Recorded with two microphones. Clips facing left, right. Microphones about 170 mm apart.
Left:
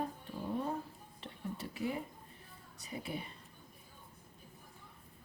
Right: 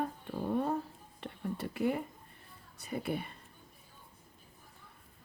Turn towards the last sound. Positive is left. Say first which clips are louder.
# right 6 dB
turn(degrees=-60)  # may be behind; listen again after turning